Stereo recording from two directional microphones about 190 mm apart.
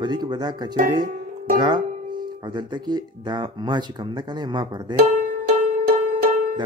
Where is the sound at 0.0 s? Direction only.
20° right (ahead or behind).